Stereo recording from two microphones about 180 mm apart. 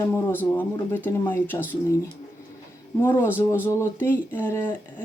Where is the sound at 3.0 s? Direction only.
15° left (ahead or behind).